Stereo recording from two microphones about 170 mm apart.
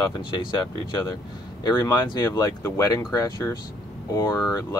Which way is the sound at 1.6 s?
20° left (ahead or behind).